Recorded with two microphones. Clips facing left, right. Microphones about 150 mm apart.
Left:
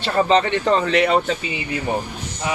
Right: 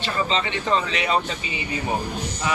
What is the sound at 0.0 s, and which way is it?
Speech, 60° left (ahead or behind).